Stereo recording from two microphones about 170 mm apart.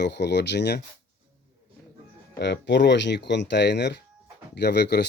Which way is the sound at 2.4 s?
85° left.